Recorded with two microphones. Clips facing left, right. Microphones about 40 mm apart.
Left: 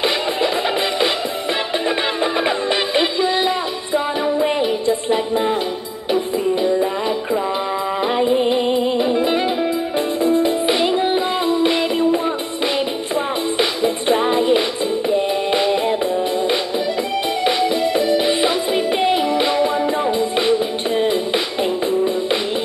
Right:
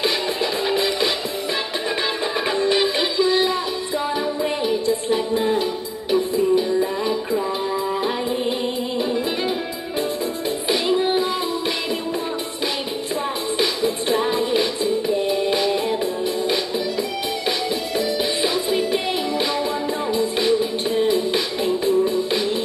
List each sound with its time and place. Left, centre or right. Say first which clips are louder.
0.0 s music: left 3 dB; left
2.4 s music: even; left
8.0 s music: left 6 dB; left
13.6 s music: left 1 dB; left